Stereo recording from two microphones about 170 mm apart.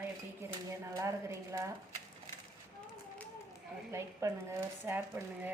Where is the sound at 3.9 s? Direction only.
15° right (ahead or behind).